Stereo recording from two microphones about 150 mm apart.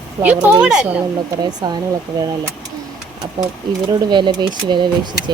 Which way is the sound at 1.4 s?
25° right (ahead or behind).